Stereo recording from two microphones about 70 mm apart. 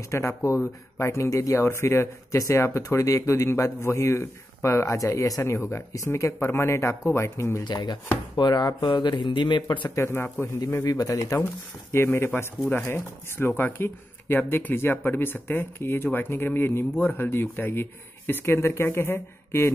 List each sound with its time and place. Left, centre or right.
0.1 s a man's voice: left
5.4 s speech: left
7.6 s speech: left
9.9 s speech: left
10.7 s a man's voice: left
11.9 s speech: left